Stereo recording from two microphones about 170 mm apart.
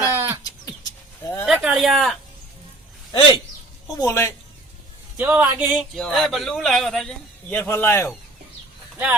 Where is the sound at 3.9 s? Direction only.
15° left (ahead or behind).